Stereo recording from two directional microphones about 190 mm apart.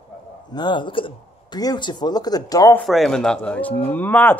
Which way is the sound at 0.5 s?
25° left (ahead or behind).